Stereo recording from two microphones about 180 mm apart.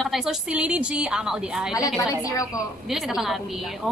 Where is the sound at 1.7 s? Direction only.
20° left (ahead or behind).